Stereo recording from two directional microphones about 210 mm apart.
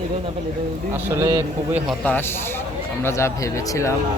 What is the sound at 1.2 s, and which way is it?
Speech, 10° right (ahead or behind).